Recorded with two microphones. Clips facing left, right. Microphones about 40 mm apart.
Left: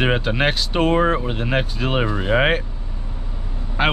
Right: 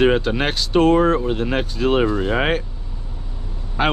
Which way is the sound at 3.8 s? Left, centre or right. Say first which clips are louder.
Even; centre.